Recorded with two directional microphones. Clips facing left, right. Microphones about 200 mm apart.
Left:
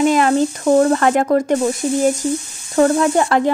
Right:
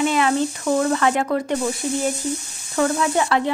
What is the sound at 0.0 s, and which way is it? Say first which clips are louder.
Speech: left 5 dB; 40° left (ahead or behind).